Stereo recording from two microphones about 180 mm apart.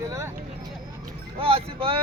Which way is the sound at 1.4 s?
30° right (ahead or behind).